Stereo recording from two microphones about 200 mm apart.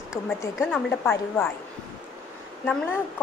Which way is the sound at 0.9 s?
10° left (ahead or behind).